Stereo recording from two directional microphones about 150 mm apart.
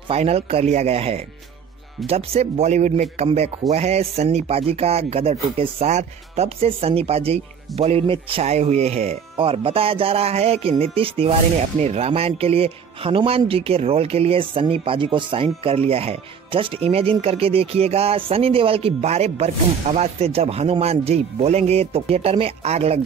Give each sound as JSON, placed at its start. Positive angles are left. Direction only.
{"t": 0.1, "sound": "speech", "side_deg": -40}